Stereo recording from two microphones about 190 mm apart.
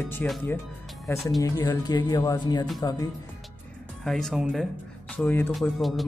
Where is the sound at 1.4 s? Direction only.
20° left (ahead or behind).